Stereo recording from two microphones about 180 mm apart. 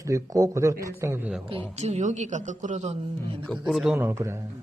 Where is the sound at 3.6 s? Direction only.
Centre (ahead or behind).